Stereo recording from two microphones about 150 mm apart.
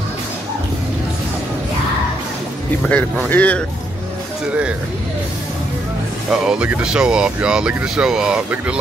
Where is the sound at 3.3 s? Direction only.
10° left (ahead or behind).